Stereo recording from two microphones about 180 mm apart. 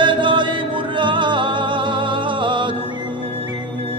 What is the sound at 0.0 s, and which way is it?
Music, 25° right (ahead or behind).